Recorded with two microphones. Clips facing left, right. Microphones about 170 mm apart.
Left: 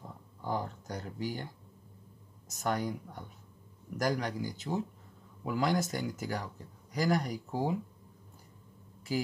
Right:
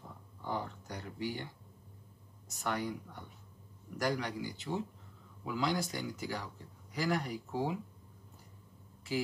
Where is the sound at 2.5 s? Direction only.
40° left (ahead or behind).